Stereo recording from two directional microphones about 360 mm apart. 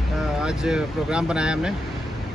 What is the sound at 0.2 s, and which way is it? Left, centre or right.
Speech, centre.